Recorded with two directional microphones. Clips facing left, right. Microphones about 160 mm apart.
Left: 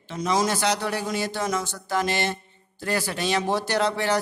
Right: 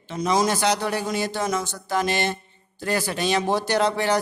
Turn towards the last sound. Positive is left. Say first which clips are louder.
# right 2 dB
turn(degrees=-15)  # may be behind; listen again after turning